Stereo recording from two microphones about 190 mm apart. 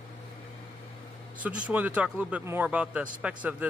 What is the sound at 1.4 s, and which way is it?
A man's voice, 5° right (ahead or behind).